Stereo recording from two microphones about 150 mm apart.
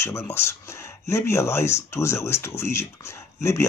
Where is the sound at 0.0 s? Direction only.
20° left (ahead or behind).